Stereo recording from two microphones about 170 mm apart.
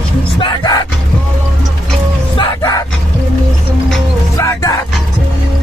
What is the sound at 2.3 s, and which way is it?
Music, 20° left (ahead or behind).